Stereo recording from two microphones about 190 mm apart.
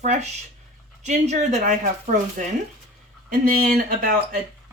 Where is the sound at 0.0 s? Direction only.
40° right (ahead or behind).